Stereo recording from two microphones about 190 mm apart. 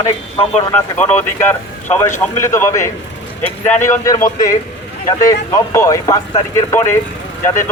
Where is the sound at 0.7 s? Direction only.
10° left (ahead or behind).